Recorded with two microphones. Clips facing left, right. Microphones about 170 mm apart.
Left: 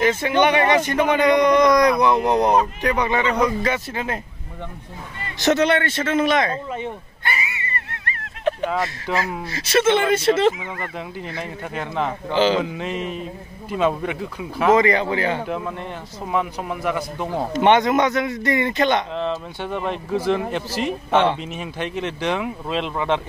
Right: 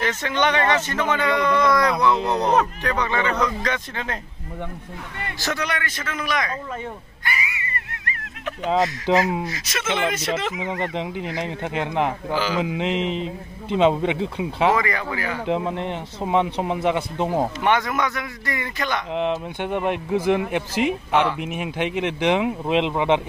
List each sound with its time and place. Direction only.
0.0 s speech: 10° left (ahead or behind)
5.4 s a sound: 25° left (ahead or behind)
9.1 s a man's voice: 25° right (ahead or behind)
9.5 s a man's voice: 30° left (ahead or behind)
10.6 s a man's voice: 25° right (ahead or behind)
12.3 s a man's voice: 25° left (ahead or behind)
12.6 s a man's voice: 15° right (ahead or behind)
14.7 s a man's voice: 25° left (ahead or behind)
15.4 s a man's voice: 20° right (ahead or behind)
17.6 s a man's voice: 20° left (ahead or behind)
19.1 s speech: 15° right (ahead or behind)
21.1 s a man's voice: 25° left (ahead or behind)
21.4 s speech: 15° right (ahead or behind)